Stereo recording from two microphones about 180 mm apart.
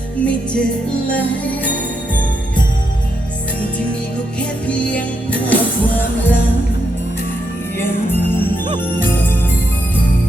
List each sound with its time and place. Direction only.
0.2 s music: 5° left (ahead or behind)
4.4 s music: 5° left (ahead or behind)